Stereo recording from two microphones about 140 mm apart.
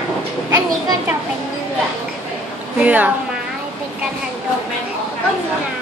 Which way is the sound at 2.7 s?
10° right (ahead or behind).